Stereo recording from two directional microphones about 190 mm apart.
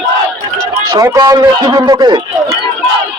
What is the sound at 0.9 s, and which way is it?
A man's voice, 20° right (ahead or behind).